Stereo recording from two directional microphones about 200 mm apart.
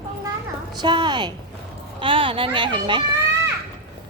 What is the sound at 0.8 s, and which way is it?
A woman's voice, 20° right (ahead or behind).